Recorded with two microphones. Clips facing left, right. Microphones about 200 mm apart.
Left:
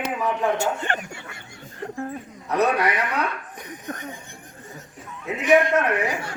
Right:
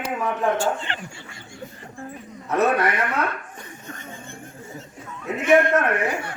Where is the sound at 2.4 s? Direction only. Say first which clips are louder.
Right 1 dB; centre (ahead or behind).